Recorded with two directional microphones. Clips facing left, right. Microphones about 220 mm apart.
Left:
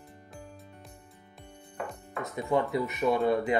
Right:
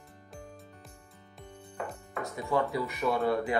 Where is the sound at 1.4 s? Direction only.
Centre (ahead or behind).